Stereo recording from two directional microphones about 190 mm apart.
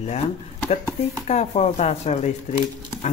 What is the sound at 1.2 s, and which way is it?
Speech, 35° left (ahead or behind).